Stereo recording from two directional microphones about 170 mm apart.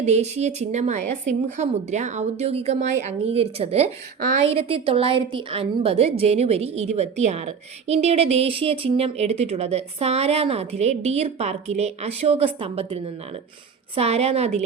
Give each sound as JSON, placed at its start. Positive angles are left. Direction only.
{"t": 0.0, "sound": "a woman's voice", "side_deg": -40}